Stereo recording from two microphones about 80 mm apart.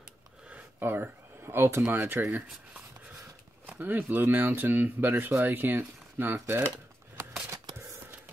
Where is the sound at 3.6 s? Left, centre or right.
Right.